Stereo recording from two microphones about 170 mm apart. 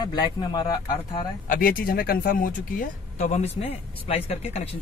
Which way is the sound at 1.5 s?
55° left (ahead or behind).